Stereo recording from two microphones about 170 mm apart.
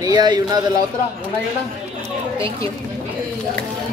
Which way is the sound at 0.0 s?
25° right (ahead or behind).